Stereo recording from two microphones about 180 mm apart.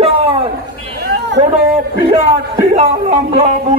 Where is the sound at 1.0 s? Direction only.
70° right (ahead or behind).